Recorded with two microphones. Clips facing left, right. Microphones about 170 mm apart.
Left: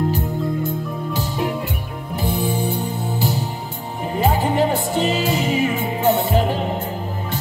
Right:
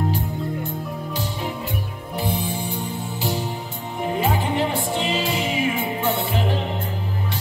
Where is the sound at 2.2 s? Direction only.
40° left (ahead or behind).